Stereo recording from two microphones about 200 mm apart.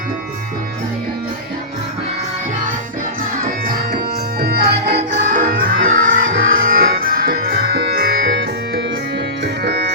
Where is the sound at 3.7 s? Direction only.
50° right (ahead or behind).